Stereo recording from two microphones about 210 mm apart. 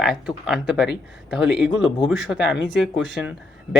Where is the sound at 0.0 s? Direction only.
Centre (ahead or behind).